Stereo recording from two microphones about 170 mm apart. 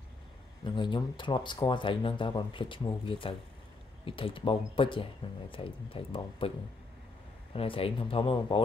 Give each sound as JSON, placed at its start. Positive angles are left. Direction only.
{"t": 0.7, "sound": "speech", "side_deg": 25}
{"t": 7.5, "sound": "speech", "side_deg": 35}